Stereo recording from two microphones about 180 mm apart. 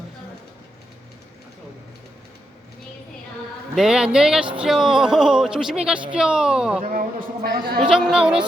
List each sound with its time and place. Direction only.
3.8 s speech: 5° right (ahead or behind)
6.9 s a woman's voice: 50° right (ahead or behind)
7.9 s speech: 5° right (ahead or behind)